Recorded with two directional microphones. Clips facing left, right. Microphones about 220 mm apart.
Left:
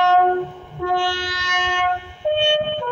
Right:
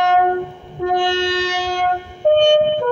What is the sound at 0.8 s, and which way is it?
Wind instrument, 20° right (ahead or behind).